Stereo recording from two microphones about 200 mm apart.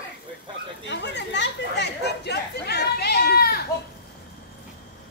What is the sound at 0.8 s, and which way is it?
Chatter, 60° left (ahead or behind).